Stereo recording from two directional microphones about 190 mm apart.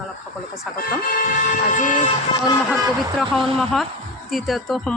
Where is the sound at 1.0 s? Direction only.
50° left (ahead or behind).